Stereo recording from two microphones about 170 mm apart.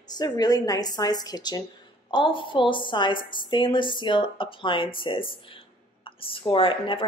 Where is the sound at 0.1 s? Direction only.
25° left (ahead or behind).